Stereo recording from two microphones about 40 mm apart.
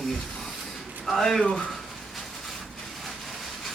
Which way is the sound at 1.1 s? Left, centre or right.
Centre.